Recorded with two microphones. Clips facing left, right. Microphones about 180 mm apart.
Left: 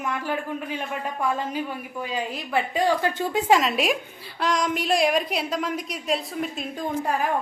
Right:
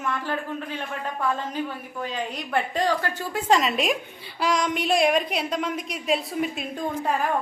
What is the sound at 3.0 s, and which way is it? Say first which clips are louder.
Speech: left 5 dB; 20° left (ahead or behind).